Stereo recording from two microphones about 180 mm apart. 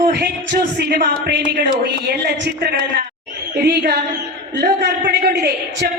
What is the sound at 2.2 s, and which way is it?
A man's voice, 65° right (ahead or behind).